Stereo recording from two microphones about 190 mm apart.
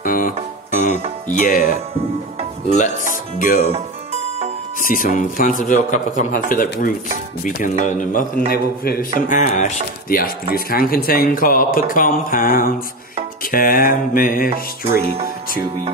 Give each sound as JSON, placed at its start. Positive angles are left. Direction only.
{"t": 0.0, "sound": "music", "side_deg": 45}
{"t": 1.4, "sound": "a man's voice", "side_deg": 50}
{"t": 3.3, "sound": "a man's voice", "side_deg": 45}
{"t": 4.8, "sound": "a man's voice", "side_deg": 45}